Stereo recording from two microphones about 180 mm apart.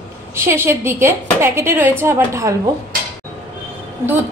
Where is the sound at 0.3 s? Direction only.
15° right (ahead or behind).